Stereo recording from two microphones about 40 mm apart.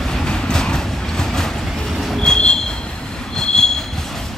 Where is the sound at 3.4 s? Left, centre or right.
Centre.